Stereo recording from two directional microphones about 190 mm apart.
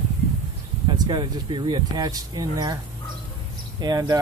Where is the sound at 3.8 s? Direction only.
20° right (ahead or behind).